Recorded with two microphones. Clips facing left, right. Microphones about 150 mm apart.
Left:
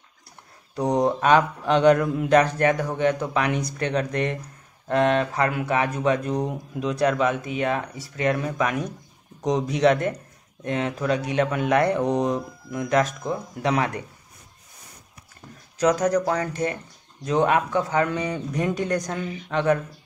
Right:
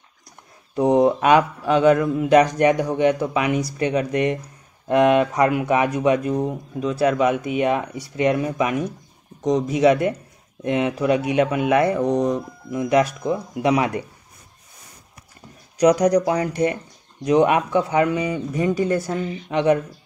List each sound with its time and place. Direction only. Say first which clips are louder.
0.8 s speech: right 4 dB; 15° right (ahead or behind)
2.3 s speech: right 4 dB; 15° right (ahead or behind)
9.4 s speech: right 3 dB; centre (ahead or behind)
13.3 s speech: right 5 dB; 15° right (ahead or behind)
15.8 s speech: right 5 dB; 15° right (ahead or behind)